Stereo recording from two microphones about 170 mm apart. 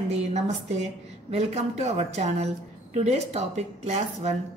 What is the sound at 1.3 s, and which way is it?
A woman's voice, 40° right (ahead or behind).